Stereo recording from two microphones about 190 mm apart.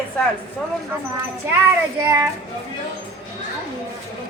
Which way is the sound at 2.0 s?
15° right (ahead or behind).